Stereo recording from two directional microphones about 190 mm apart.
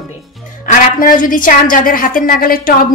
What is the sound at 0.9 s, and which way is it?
A woman's voice, 45° left (ahead or behind).